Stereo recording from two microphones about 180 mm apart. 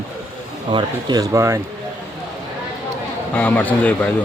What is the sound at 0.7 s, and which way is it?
Speech, 20° right (ahead or behind).